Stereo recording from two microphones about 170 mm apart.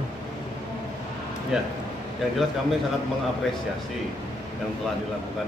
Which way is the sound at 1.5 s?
5° right (ahead or behind).